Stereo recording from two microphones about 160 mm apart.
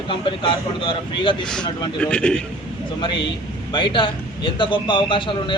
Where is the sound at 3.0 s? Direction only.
30° left (ahead or behind).